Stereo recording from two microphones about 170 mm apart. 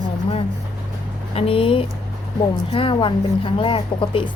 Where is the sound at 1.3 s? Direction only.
35° left (ahead or behind).